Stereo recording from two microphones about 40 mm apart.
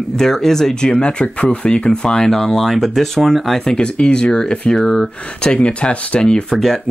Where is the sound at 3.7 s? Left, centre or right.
Left.